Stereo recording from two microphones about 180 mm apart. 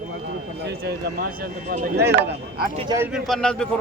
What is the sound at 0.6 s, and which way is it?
Speech, 65° right (ahead or behind).